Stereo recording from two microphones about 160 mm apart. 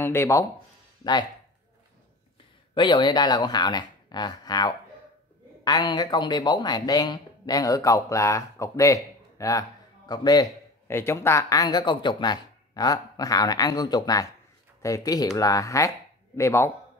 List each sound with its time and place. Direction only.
0.0 s speech: 15° left (ahead or behind)
2.7 s speech: 30° left (ahead or behind)